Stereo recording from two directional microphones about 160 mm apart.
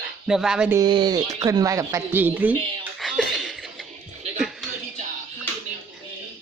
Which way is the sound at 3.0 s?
Centre (ahead or behind).